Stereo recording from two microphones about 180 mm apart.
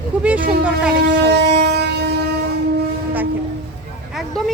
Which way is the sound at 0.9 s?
75° right (ahead or behind).